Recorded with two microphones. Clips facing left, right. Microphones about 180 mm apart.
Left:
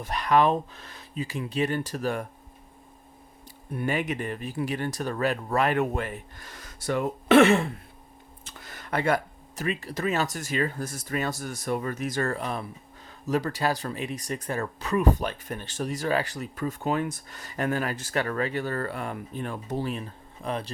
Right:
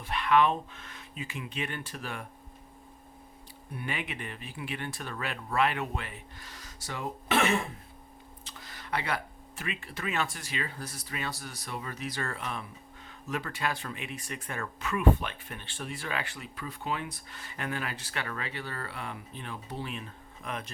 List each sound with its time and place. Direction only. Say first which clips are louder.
0.0 s speech: left 3 dB; 40° left (ahead or behind)
3.7 s speech: left 9 dB; 45° left (ahead or behind)
8.4 s speech: left 2 dB; 50° left (ahead or behind); by 20.7 s 35° left (ahead or behind)